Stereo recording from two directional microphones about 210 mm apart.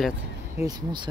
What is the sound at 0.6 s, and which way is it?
Speech, 30° left (ahead or behind).